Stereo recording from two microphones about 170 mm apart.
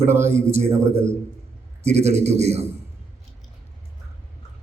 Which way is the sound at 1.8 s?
40° right (ahead or behind).